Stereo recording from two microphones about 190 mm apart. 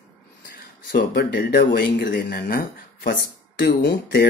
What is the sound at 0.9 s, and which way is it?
Speech, 55° left (ahead or behind).